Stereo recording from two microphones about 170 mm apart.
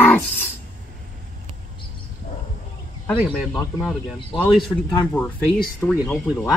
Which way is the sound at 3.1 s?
10° right (ahead or behind).